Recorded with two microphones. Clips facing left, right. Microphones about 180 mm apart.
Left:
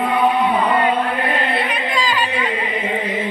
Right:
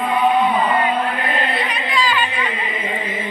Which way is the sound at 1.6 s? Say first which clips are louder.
Even; 45° left (ahead or behind).